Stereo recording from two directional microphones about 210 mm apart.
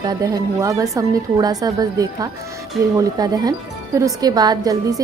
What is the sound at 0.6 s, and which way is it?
Speech, 15° right (ahead or behind).